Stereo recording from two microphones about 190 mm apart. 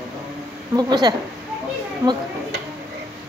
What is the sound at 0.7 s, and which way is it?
Speech, 20° right (ahead or behind).